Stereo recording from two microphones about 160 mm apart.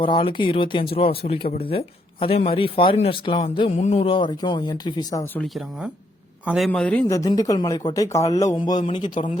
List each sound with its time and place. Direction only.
0.0 s a man's voice: 35° left (ahead or behind)
6.4 s a man's voice: 5° right (ahead or behind)
6.7 s speech: 10° left (ahead or behind)
7.1 s speech: 20° left (ahead or behind)